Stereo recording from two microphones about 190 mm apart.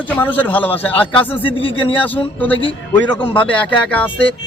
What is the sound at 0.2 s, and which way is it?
Speech, 10° left (ahead or behind).